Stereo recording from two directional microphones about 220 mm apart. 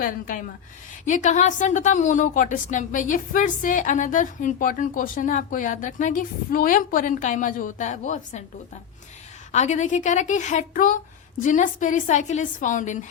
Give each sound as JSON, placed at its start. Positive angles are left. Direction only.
{"t": 0.0, "sound": "a woman's voice", "side_deg": 40}
{"t": 9.5, "sound": "a woman's voice", "side_deg": 35}